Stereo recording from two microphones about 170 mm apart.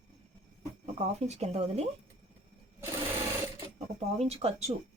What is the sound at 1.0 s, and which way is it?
Speech, 40° right (ahead or behind).